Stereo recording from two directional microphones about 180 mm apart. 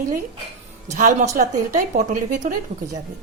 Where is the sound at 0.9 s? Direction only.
40° right (ahead or behind).